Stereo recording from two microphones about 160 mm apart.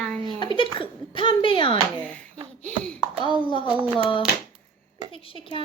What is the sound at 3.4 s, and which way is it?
Speech, 30° left (ahead or behind).